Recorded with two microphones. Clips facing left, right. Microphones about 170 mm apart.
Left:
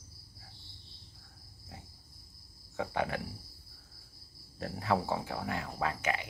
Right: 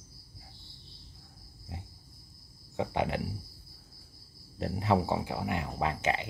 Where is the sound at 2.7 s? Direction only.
20° right (ahead or behind).